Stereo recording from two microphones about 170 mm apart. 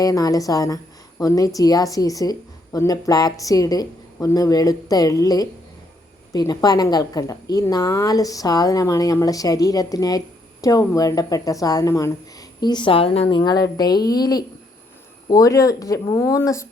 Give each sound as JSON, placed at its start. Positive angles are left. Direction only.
{"t": 0.0, "sound": "a woman's voice", "side_deg": 20}